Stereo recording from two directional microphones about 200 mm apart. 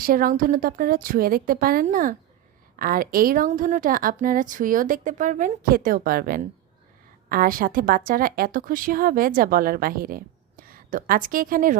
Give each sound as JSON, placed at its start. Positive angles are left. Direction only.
{"t": 0.0, "sound": "a woman's voice", "side_deg": -45}